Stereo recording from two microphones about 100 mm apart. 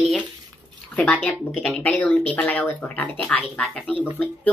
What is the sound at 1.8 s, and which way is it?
A woman's voice, 15° left (ahead or behind).